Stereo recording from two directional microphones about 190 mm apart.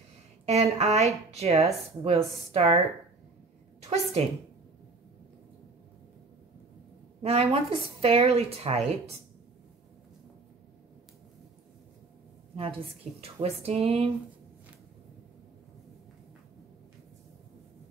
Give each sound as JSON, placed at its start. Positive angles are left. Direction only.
{"t": 0.5, "sound": "a woman's voice", "side_deg": -35}
{"t": 3.8, "sound": "a woman's voice", "side_deg": -35}
{"t": 7.2, "sound": "a woman's voice", "side_deg": -35}
{"t": 12.5, "sound": "a woman's voice", "side_deg": -30}